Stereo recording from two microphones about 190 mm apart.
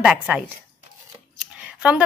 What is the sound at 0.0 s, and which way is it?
Speech, 5° right (ahead or behind).